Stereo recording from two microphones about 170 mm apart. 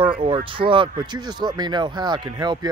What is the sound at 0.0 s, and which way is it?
Speech, 30° right (ahead or behind).